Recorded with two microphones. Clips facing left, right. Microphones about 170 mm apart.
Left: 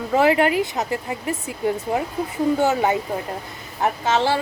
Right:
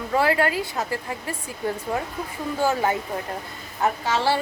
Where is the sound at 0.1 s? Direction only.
20° left (ahead or behind).